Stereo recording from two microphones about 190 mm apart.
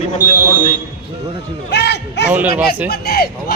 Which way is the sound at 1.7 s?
60° left (ahead or behind).